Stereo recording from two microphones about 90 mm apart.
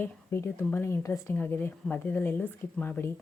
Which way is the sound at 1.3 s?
20° left (ahead or behind).